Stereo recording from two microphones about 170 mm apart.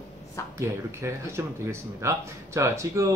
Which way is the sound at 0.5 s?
15° right (ahead or behind).